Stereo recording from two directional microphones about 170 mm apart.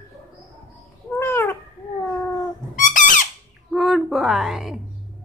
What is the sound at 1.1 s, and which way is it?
Cat, 15° left (ahead or behind).